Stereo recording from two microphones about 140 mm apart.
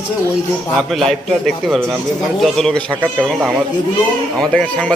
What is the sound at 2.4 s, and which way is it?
Speech, 5° left (ahead or behind).